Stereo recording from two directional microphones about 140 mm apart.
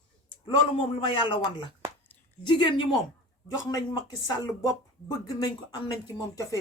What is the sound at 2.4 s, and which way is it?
A woman's voice, 35° left (ahead or behind).